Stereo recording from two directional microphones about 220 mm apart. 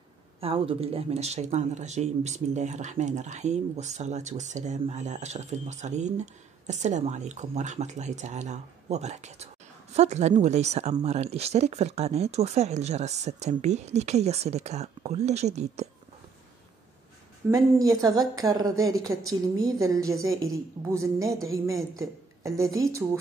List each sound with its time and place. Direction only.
0.4 s speech: 25° right (ahead or behind)
17.5 s a woman's voice: 15° right (ahead or behind)